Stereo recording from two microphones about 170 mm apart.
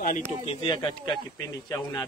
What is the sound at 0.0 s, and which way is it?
Speech, 50° left (ahead or behind).